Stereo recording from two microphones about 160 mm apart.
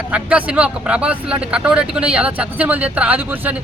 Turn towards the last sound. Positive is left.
turn(degrees=-10)  # may be behind; listen again after turning